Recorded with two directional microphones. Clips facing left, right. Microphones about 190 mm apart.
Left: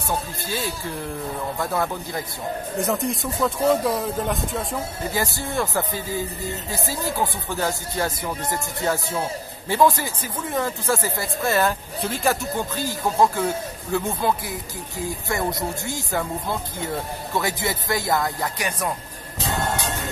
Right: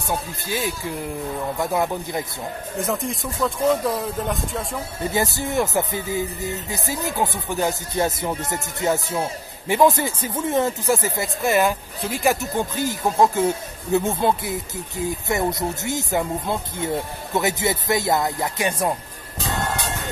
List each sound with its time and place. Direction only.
0.5 s speech: 15° right (ahead or behind)
2.8 s speech: centre (ahead or behind)
5.1 s speech: 20° right (ahead or behind)